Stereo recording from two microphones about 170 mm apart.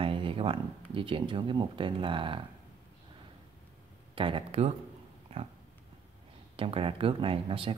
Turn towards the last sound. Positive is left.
turn(degrees=-30)  # may be behind; listen again after turning